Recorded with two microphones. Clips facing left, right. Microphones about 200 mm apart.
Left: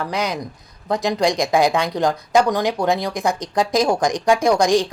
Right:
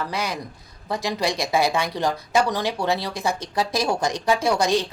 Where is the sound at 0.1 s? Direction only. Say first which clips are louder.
Left 4 dB; 15° left (ahead or behind).